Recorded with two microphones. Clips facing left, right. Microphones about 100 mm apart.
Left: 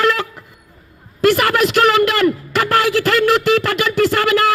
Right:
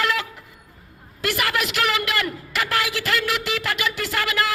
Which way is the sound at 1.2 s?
45° left (ahead or behind).